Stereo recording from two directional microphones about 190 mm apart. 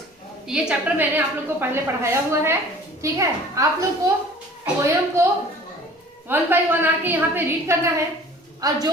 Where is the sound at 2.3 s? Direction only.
15° right (ahead or behind).